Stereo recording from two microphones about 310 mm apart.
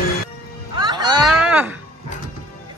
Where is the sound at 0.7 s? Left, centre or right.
Centre.